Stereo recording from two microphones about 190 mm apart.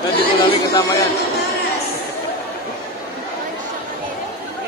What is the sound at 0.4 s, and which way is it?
Speech, 20° left (ahead or behind).